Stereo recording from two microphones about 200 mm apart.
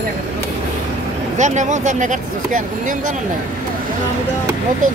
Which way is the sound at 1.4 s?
35° right (ahead or behind).